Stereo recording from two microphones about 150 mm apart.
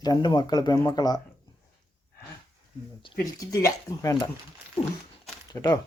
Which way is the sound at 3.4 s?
20° left (ahead or behind).